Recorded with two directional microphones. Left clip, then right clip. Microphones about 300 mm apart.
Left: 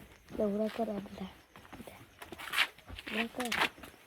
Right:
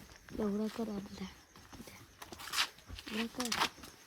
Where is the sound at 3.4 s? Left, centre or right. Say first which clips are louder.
Left 1 dB; centre.